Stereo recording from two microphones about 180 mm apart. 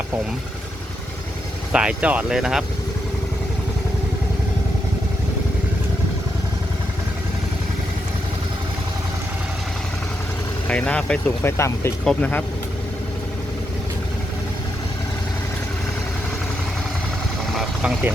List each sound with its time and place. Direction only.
1.7 s speech: 5° right (ahead or behind)
10.7 s speech: 5° left (ahead or behind)
17.6 s vehicle: 5° right (ahead or behind)